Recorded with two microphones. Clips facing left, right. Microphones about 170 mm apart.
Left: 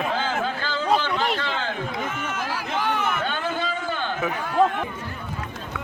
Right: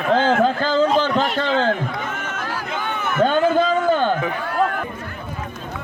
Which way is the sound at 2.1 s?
55° right (ahead or behind).